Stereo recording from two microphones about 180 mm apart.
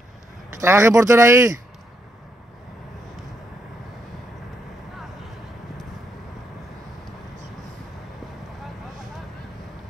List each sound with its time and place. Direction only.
0.6 s speech: 15° right (ahead or behind)